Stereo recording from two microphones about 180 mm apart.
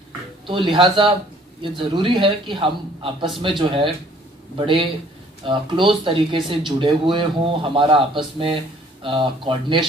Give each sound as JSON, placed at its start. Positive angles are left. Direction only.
{"t": 0.5, "sound": "speech", "side_deg": -30}